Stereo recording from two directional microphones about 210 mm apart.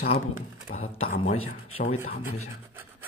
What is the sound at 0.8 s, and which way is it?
Speech, 80° left.